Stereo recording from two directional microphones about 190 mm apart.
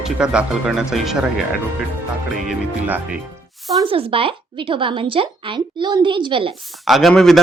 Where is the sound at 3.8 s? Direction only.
30° right (ahead or behind).